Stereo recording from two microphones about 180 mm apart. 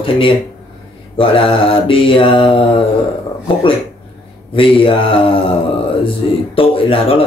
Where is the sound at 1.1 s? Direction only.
30° left (ahead or behind).